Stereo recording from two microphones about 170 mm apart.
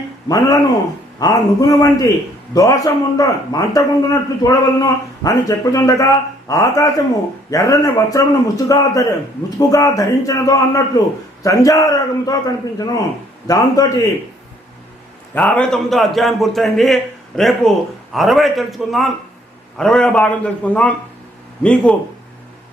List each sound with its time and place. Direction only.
0.3 s a man's voice: 20° left (ahead or behind)
15.4 s a man's voice: 5° left (ahead or behind)